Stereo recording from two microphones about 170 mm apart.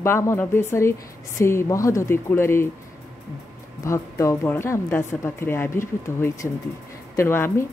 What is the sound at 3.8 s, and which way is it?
A woman's voice, 15° left (ahead or behind).